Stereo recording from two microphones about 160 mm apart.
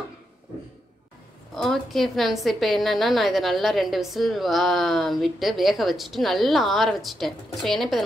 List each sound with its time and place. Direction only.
1.5 s a woman's voice: centre (ahead or behind)